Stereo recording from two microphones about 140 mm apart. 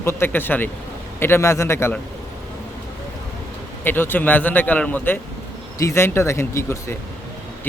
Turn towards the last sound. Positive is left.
turn(degrees=20)  # may be behind; listen again after turning